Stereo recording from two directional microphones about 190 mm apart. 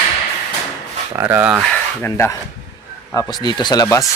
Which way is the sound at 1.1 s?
15° right (ahead or behind).